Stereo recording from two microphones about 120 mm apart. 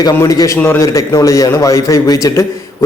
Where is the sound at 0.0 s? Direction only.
25° left (ahead or behind).